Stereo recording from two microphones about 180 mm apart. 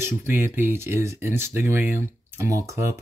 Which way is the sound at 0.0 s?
10° right (ahead or behind).